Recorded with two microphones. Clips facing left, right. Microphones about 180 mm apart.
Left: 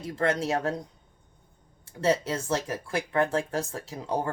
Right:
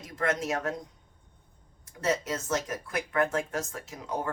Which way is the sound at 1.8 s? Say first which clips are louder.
Left 4 dB; 30° left (ahead or behind).